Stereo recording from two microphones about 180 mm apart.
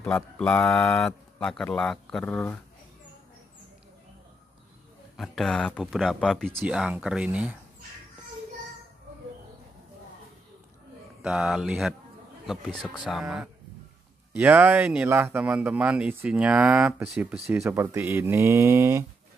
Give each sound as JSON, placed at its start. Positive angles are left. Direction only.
{"t": 0.0, "sound": "speech", "side_deg": 5}
{"t": 5.1, "sound": "speech", "side_deg": 0}
{"t": 11.2, "sound": "speech", "side_deg": -5}
{"t": 13.0, "sound": "speech", "side_deg": 0}